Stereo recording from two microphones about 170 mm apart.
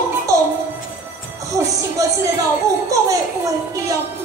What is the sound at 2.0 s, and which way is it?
A child's voice, 20° right (ahead or behind).